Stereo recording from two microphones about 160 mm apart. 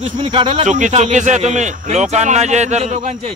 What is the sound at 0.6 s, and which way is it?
A man's voice, 50° right (ahead or behind).